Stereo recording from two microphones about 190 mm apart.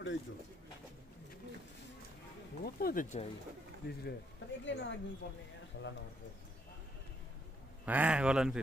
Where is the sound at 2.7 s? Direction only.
50° left (ahead or behind).